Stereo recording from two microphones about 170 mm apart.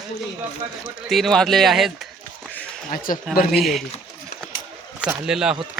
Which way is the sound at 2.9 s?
55° left (ahead or behind).